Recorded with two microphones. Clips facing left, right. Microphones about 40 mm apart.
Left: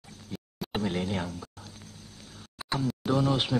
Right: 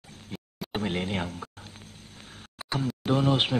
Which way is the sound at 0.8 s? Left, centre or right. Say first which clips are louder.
Right 1 dB; right.